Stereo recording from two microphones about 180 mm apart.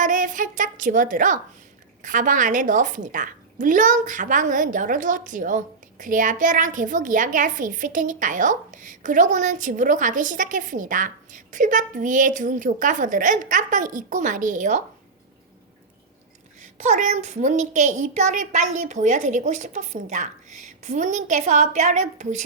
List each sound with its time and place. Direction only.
0.0 s a woman's voice: 45° right (ahead or behind)
16.7 s a woman's voice: 40° right (ahead or behind)